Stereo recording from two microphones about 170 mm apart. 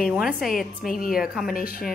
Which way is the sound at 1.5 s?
60° left (ahead or behind).